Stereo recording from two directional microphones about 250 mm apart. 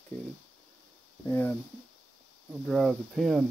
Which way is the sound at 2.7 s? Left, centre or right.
Centre.